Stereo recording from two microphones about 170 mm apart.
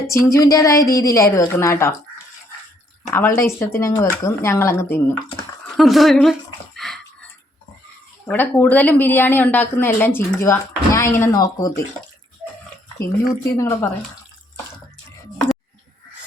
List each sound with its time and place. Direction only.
0.1 s a woman's voice: 15° left (ahead or behind)
3.1 s speech: 15° left (ahead or behind)
5.6 s speech: centre (ahead or behind)
6.7 s dog: 5° left (ahead or behind)
8.3 s speech: 10° left (ahead or behind)
13.0 s speech: 15° left (ahead or behind)